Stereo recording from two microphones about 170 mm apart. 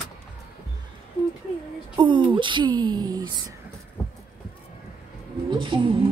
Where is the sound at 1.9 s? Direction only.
30° right (ahead or behind).